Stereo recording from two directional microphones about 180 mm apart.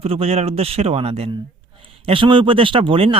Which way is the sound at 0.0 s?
35° right (ahead or behind).